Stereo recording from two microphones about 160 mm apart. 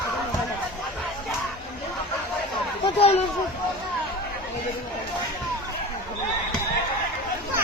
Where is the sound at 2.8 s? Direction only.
35° left (ahead or behind).